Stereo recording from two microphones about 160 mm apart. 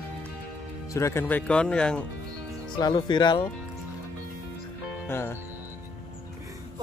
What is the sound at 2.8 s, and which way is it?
Speech, 30° left (ahead or behind).